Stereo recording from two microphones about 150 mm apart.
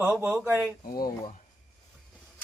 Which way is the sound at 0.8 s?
80° left.